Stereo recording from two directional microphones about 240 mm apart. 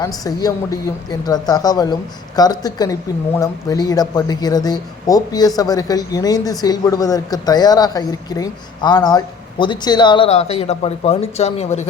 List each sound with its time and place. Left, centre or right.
0.0 s speech: centre